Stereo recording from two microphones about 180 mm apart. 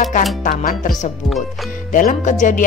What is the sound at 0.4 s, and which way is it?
Speech, 50° left (ahead or behind).